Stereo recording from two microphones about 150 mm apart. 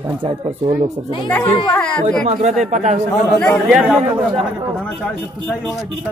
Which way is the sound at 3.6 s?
5° right (ahead or behind).